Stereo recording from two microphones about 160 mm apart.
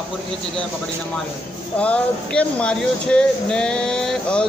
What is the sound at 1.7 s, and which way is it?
Speech, 10° left (ahead or behind).